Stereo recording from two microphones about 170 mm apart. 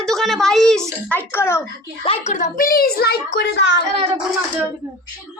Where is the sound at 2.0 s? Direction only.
35° left (ahead or behind).